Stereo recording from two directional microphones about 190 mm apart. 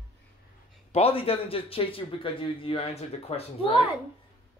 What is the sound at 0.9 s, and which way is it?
Speech, 30° left (ahead or behind).